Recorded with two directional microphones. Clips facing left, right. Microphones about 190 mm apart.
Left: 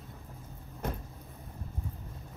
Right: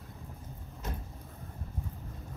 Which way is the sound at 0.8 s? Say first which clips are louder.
Left 5 dB; 55° left (ahead or behind).